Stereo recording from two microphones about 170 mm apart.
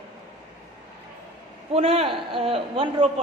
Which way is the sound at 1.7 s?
35° right (ahead or behind).